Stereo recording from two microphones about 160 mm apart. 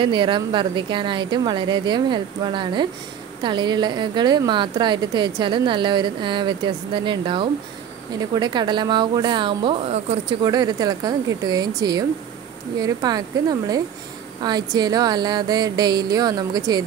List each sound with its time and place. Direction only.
0.0 s a woman's voice: 30° right (ahead or behind)
10.4 s a woman's voice: 25° right (ahead or behind)